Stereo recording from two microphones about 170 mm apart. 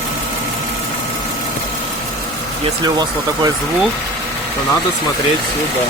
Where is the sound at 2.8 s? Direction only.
25° right (ahead or behind).